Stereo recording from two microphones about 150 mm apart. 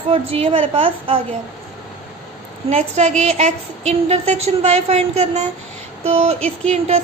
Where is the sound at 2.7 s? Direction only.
45° right (ahead or behind).